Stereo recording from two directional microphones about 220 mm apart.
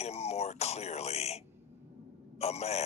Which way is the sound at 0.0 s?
30° left (ahead or behind).